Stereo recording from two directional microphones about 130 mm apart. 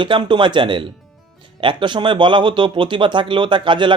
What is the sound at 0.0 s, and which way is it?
Speech, 40° right (ahead or behind).